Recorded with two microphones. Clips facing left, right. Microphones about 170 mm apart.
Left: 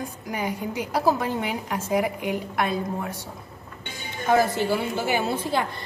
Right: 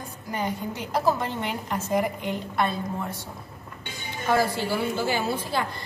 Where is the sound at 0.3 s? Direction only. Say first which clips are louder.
Even; 10° left (ahead or behind).